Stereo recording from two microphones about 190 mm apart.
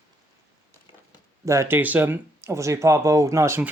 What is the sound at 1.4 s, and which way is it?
Speech, 15° right (ahead or behind).